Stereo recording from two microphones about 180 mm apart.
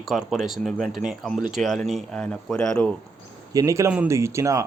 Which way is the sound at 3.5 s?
15° right (ahead or behind).